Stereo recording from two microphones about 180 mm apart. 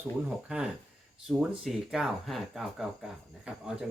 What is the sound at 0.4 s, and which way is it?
Speech, 5° right (ahead or behind).